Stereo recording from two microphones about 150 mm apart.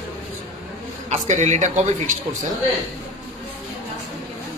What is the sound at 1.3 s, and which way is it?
Speech, 50° right (ahead or behind).